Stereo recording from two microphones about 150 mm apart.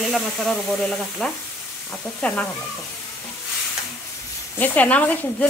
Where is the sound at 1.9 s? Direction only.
10° left (ahead or behind).